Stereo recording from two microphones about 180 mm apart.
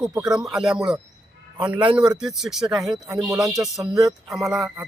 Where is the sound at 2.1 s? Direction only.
5° right (ahead or behind).